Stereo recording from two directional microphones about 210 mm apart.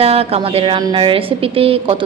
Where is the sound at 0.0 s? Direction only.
30° right (ahead or behind).